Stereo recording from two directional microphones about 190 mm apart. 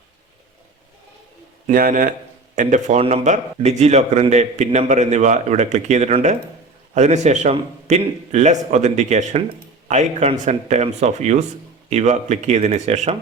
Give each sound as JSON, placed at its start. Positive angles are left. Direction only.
{"t": 1.6, "sound": "a man's voice", "side_deg": -45}